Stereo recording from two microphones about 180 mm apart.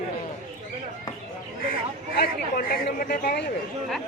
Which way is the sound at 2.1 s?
55° left (ahead or behind).